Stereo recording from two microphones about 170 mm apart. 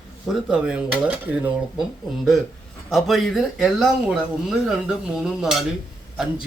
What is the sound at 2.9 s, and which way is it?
Speech, centre (ahead or behind).